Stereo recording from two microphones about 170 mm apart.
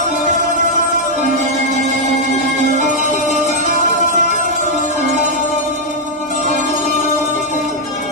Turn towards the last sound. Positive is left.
turn(degrees=45)  # may be behind; listen again after turning